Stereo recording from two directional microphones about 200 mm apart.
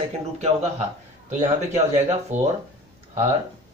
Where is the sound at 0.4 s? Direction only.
30° right (ahead or behind).